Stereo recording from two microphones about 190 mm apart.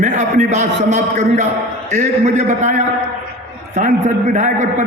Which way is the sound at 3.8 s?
40° right (ahead or behind).